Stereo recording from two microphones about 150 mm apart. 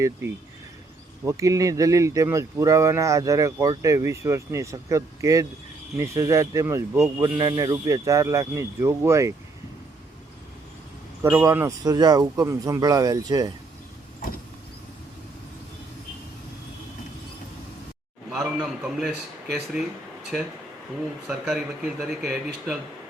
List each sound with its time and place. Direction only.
1.3 s speech: 20° right (ahead or behind)
11.2 s speech: 15° right (ahead or behind)
18.3 s a sound: 5° right (ahead or behind)
21.2 s speech: 5° right (ahead or behind)